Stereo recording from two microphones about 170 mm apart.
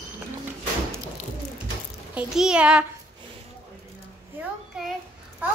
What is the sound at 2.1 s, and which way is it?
Speech, 5° right (ahead or behind).